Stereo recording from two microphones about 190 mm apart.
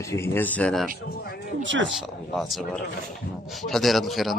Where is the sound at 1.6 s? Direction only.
75° right (ahead or behind).